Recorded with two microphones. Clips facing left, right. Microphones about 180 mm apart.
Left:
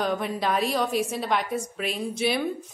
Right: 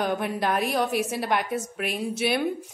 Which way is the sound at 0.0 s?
5° right (ahead or behind).